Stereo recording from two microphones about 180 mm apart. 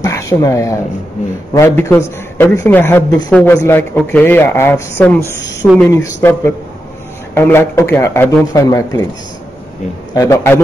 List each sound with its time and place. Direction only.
0.0 s a sound: 20° left (ahead or behind)
1.5 s a man's voice: 15° left (ahead or behind)
10.1 s a man's voice: 15° left (ahead or behind)